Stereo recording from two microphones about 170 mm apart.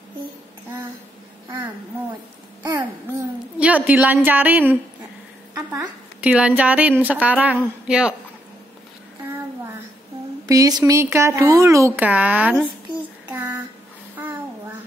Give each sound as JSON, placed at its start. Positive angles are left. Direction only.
{"t": 2.6, "sound": "babbling", "side_deg": -20}
{"t": 3.5, "sound": "a woman's voice", "side_deg": -10}
{"t": 10.4, "sound": "a woman's voice", "side_deg": -20}
{"t": 14.1, "sound": "child singing", "side_deg": -10}